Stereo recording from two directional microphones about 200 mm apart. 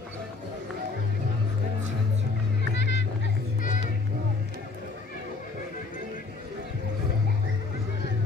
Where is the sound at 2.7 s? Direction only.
60° left (ahead or behind).